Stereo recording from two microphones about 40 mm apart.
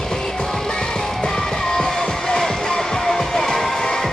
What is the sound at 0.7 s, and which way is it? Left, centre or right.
Music, centre.